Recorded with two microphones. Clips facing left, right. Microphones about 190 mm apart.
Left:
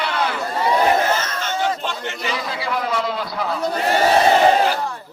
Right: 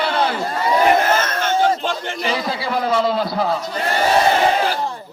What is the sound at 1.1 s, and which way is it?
Crowd, 55° right (ahead or behind).